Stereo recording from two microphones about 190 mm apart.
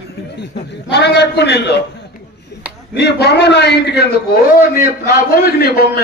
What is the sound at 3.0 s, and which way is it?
A man's voice, 60° left (ahead or behind).